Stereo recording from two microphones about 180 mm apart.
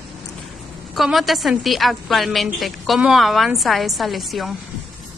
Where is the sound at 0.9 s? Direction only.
Centre (ahead or behind).